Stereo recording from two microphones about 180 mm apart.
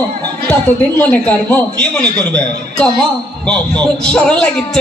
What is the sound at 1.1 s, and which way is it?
A man's voice, 5° left (ahead or behind).